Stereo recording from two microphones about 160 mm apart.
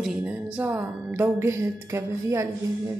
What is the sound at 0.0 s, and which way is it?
A woman's voice, 5° right (ahead or behind).